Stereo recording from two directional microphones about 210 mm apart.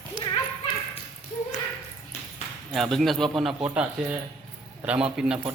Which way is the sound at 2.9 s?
Centre (ahead or behind).